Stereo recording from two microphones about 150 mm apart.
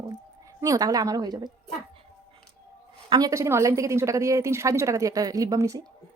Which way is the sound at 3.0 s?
25° right (ahead or behind).